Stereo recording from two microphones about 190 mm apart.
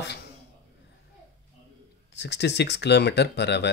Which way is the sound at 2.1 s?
65° left (ahead or behind).